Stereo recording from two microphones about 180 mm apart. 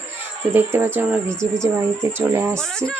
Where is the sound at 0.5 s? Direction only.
10° right (ahead or behind).